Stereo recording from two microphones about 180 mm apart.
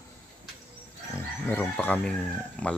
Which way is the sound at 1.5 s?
10° left (ahead or behind).